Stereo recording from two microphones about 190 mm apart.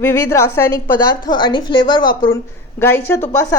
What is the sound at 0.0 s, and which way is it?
A woman's voice, 15° left (ahead or behind).